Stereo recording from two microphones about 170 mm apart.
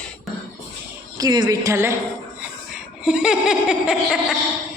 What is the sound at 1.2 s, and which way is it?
Speech, 20° right (ahead or behind).